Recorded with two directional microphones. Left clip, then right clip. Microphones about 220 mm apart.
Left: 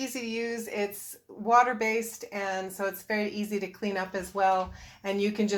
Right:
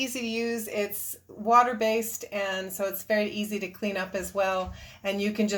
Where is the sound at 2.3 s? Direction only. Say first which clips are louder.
Right 2 dB; 20° left (ahead or behind).